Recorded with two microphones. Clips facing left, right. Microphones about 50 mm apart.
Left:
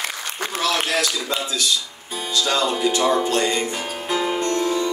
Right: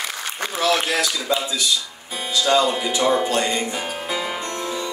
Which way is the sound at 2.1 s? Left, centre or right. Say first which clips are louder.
Right 3 dB; right.